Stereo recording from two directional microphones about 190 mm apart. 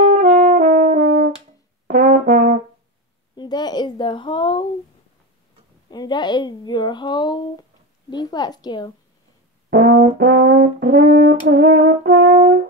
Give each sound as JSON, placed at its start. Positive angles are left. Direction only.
{"t": 0.0, "sound": "brass instrument", "side_deg": -40}
{"t": 3.3, "sound": "speech", "side_deg": 20}
{"t": 5.9, "sound": "a woman's voice", "side_deg": 20}
{"t": 9.7, "sound": "brass instrument", "side_deg": -50}
{"t": 12.3, "sound": "french horn", "side_deg": -40}